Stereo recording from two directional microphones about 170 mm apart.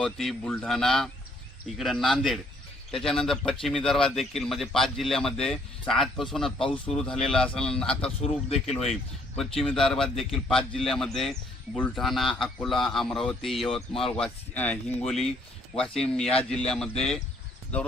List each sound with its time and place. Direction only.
0.0 s speech: 5° left (ahead or behind)
8.2 s speech: 35° left (ahead or behind)
8.8 s speech: centre (ahead or behind)